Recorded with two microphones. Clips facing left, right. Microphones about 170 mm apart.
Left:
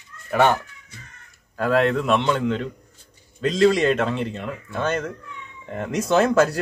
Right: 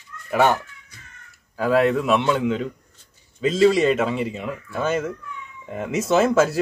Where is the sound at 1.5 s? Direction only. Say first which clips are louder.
Right 1 dB; 5° right (ahead or behind).